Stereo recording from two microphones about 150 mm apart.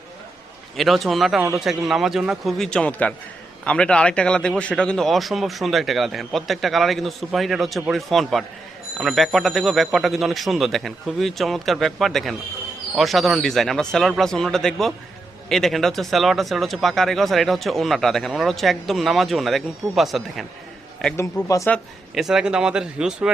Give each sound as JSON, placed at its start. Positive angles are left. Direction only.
{"t": 0.8, "sound": "speech", "side_deg": 0}
{"t": 21.4, "sound": "speech", "side_deg": 20}
{"t": 21.7, "sound": "speech", "side_deg": 0}